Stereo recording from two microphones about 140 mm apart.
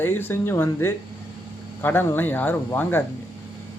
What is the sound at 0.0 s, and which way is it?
Speech, 15° left (ahead or behind).